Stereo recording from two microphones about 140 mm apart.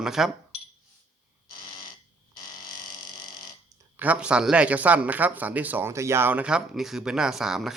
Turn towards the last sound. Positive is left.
turn(degrees=-5)  # may be behind; listen again after turning